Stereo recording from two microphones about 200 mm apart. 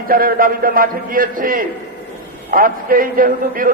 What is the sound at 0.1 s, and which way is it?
A man's voice, 45° right (ahead or behind).